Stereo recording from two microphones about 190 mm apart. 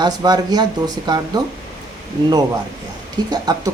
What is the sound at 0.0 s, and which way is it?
A woman's voice, 20° right (ahead or behind).